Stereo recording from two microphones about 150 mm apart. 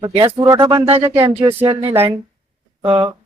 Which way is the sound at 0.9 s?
20° right (ahead or behind).